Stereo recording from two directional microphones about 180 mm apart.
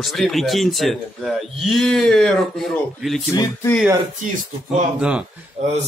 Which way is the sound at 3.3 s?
20° left (ahead or behind).